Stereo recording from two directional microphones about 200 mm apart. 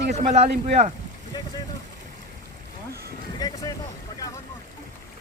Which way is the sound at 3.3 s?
20° left (ahead or behind).